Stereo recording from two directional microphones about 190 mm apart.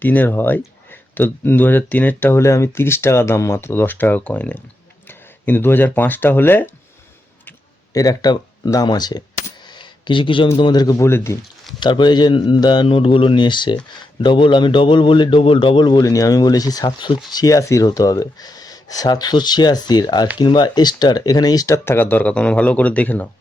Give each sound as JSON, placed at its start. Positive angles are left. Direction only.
{"t": 0.0, "sound": "speech", "side_deg": 10}
{"t": 7.9, "sound": "a man's voice", "side_deg": 20}
{"t": 9.6, "sound": "a sound", "side_deg": 25}
{"t": 10.6, "sound": "a man's voice", "side_deg": 20}